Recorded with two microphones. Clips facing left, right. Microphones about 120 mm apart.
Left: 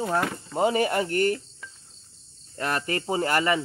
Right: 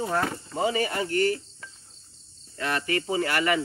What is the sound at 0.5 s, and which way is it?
Speech, 50° left (ahead or behind).